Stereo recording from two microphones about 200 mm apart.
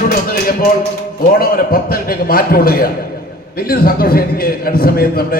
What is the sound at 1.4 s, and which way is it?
A man's voice, 45° left (ahead or behind).